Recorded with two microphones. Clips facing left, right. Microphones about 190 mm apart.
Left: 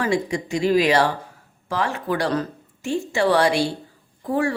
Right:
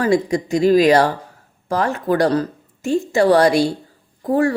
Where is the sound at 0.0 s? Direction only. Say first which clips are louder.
Right 5 dB; 40° right (ahead or behind).